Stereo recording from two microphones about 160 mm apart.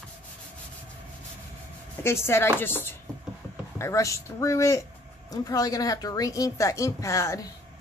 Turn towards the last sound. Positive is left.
turn(degrees=20)  # may be behind; listen again after turning